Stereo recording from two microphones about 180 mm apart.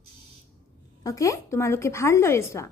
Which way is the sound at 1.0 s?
20° left (ahead or behind).